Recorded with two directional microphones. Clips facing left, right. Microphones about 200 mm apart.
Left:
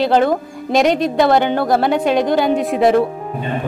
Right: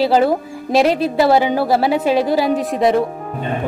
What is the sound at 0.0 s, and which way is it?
A woman's voice, 5° right (ahead or behind).